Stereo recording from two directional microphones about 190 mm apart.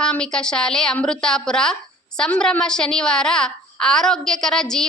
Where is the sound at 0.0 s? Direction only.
5° left (ahead or behind).